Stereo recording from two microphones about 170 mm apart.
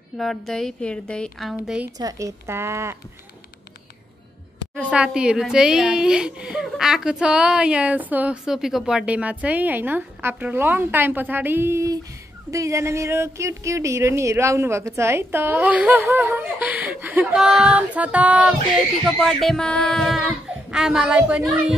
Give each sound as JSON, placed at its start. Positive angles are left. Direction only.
{"t": 0.2, "sound": "singing", "side_deg": 0}
{"t": 2.0, "sound": "a child's voice", "side_deg": -20}
{"t": 4.7, "sound": "a child's voice", "side_deg": -5}
{"t": 19.0, "sound": "singing", "side_deg": 0}